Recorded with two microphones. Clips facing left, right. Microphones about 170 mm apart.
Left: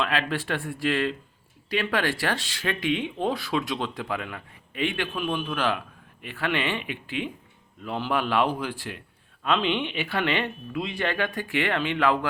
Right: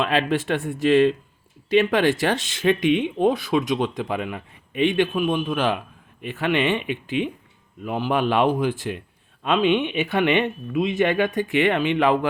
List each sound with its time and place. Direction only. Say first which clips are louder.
0.0 s speech: right 6 dB; 20° right (ahead or behind)